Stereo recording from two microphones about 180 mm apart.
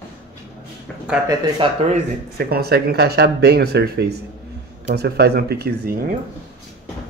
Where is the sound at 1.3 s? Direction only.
20° right (ahead or behind).